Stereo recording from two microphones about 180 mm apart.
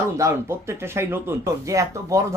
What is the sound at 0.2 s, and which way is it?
Speech, 15° right (ahead or behind).